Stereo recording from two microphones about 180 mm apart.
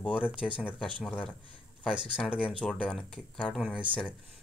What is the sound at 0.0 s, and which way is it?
Speech, 5° right (ahead or behind).